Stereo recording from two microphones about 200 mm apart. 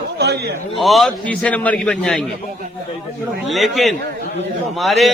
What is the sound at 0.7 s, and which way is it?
A man's voice, centre (ahead or behind).